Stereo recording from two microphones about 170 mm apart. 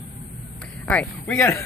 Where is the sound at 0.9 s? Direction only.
5° left (ahead or behind).